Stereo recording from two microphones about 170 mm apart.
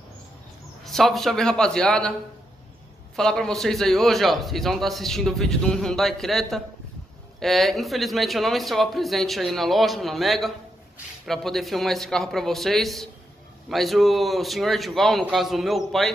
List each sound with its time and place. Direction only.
0.8 s a man's voice: centre (ahead or behind)
3.2 s a man's voice: 5° left (ahead or behind)